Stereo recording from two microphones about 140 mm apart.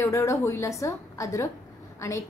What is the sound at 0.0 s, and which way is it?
A woman's voice, 20° left (ahead or behind).